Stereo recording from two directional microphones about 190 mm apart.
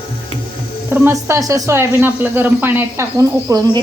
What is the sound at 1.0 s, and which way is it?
Speech, 15° right (ahead or behind).